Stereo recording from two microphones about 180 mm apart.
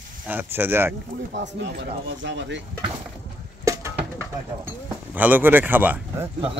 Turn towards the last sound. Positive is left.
turn(degrees=-10)  # may be behind; listen again after turning